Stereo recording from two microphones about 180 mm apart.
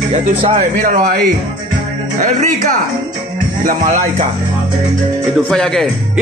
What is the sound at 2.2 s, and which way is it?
Speech, 45° right (ahead or behind).